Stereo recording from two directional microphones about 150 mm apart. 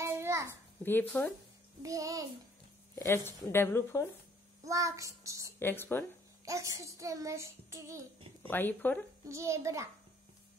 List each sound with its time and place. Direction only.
0.0 s a sound: 20° right (ahead or behind)
0.5 s a woman's voice: 15° left (ahead or behind)
1.8 s child singing: 20° right (ahead or behind)
3.0 s speech: 15° left (ahead or behind)
4.6 s child singing: 20° right (ahead or behind)
5.6 s speech: 15° left (ahead or behind)
6.4 s child singing: 20° right (ahead or behind)
8.4 s speech: 15° left (ahead or behind)
9.2 s child singing: 20° right (ahead or behind)